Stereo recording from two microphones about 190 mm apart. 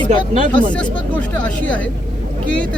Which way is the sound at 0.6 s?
5° left (ahead or behind).